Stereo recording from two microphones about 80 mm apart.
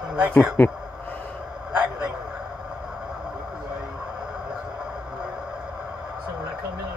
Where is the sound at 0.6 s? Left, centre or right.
Left.